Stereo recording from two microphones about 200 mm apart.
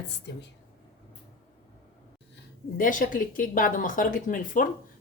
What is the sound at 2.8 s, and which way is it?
A woman's voice, 45° left (ahead or behind).